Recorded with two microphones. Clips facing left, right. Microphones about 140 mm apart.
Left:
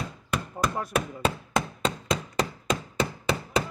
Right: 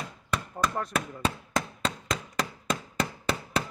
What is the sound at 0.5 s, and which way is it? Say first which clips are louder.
Chopping: left 2 dB; 10° left (ahead or behind).